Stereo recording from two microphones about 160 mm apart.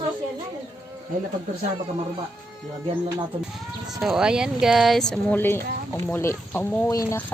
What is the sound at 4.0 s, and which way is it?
Speech, 5° right (ahead or behind).